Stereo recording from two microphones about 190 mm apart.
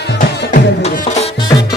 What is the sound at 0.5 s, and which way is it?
Music, 35° left (ahead or behind).